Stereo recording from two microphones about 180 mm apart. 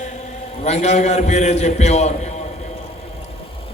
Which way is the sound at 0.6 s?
40° left (ahead or behind).